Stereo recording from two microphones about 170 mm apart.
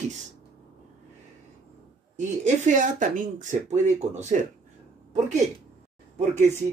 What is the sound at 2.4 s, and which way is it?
Speech, 45° right (ahead or behind).